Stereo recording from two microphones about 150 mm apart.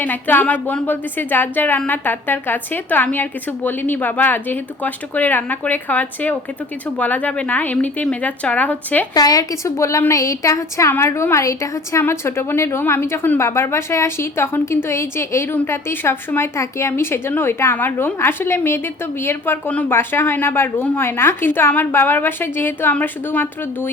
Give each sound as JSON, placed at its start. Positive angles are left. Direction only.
{"t": 0.0, "sound": "a woman's voice", "side_deg": 10}
{"t": 9.1, "sound": "a woman's voice", "side_deg": 25}